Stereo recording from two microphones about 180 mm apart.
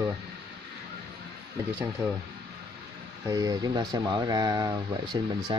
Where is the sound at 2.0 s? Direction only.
20° right (ahead or behind).